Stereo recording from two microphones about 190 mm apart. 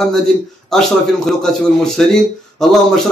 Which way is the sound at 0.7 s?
Centre (ahead or behind).